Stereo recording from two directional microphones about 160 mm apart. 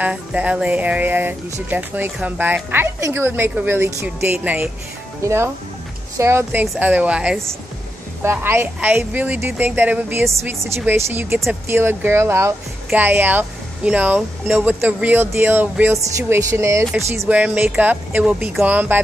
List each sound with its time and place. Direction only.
0.0 s speech: 5° right (ahead or behind)